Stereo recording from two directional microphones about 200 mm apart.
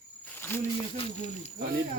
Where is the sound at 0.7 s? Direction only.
25° left (ahead or behind).